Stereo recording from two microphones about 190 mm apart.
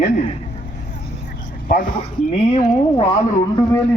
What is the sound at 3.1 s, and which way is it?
Speech, 25° left (ahead or behind).